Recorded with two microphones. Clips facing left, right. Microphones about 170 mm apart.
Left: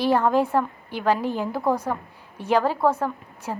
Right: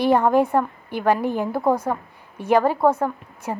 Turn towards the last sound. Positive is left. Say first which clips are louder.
# right 2 dB
turn(degrees=-15)  # may be behind; listen again after turning